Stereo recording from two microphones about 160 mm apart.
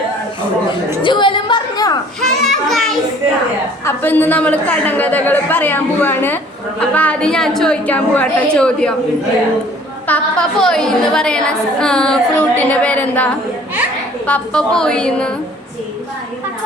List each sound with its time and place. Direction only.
1.0 s a sound: 30° left (ahead or behind)
2.2 s music: centre (ahead or behind)
3.8 s a woman's voice: 10° left (ahead or behind)
10.1 s a woman's voice: 5° left (ahead or behind)